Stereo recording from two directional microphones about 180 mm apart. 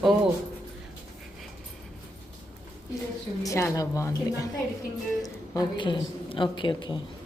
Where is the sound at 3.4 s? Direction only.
15° left (ahead or behind).